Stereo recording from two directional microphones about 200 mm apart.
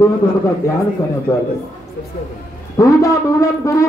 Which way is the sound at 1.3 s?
15° left (ahead or behind).